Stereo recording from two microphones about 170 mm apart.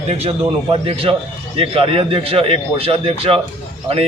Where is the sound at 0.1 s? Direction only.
35° right (ahead or behind).